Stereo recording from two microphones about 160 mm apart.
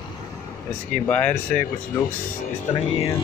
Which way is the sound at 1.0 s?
10° left (ahead or behind).